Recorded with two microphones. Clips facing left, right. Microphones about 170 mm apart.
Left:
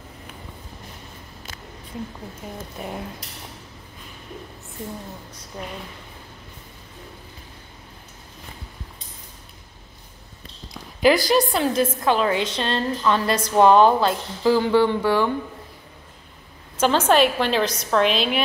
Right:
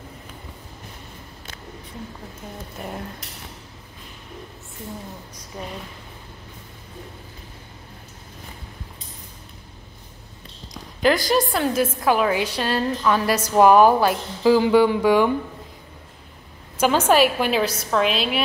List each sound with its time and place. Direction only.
2.4 s speech: 5° left (ahead or behind)
5.5 s a woman's voice: 5° right (ahead or behind)
11.0 s a woman's voice: 5° left (ahead or behind); by 15.3 s 15° right (ahead or behind)
16.7 s a woman's voice: 10° right (ahead or behind)